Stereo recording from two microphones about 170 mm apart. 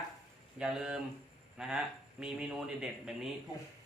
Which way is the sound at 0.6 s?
5° right (ahead or behind).